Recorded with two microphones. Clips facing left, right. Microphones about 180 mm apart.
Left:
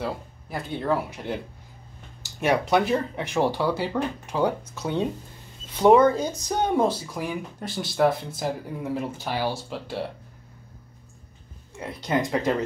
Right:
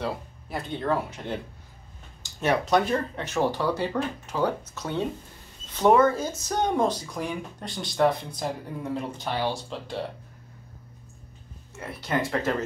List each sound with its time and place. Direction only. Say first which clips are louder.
0.0 s speech: even; 5° left (ahead or behind)
2.4 s speech: left 1 dB; 10° left (ahead or behind)
11.7 s speech: left 3 dB; 15° left (ahead or behind)